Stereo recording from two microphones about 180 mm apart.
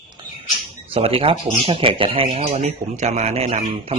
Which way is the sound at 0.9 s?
30° right (ahead or behind).